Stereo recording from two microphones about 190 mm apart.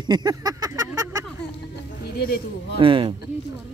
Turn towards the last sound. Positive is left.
turn(degrees=-25)  # may be behind; listen again after turning